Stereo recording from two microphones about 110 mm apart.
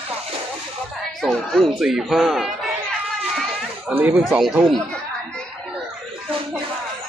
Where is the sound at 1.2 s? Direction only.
Centre (ahead or behind).